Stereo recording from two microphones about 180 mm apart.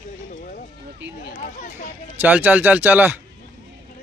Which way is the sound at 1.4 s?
45° left (ahead or behind).